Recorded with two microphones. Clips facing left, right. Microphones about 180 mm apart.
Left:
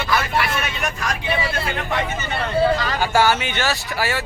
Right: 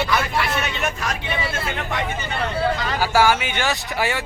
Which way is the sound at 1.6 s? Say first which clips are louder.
Left 2 dB; 15° right (ahead or behind).